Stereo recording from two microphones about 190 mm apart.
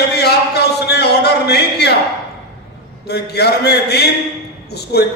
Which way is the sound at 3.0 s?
60° left (ahead or behind).